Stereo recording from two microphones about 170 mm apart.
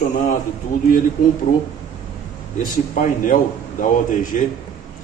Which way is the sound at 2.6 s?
50° left (ahead or behind).